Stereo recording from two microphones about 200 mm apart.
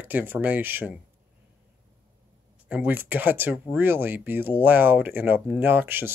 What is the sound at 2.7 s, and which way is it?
Speech, 10° right (ahead or behind).